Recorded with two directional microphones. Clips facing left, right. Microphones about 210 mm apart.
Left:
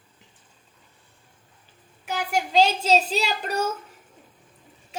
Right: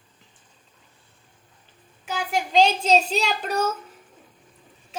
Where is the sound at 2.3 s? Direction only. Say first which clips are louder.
Right 1 dB; 5° left (ahead or behind).